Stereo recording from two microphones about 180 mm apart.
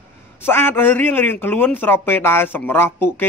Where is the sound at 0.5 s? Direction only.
10° left (ahead or behind).